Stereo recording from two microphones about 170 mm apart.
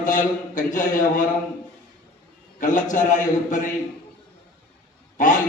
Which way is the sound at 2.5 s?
50° left (ahead or behind).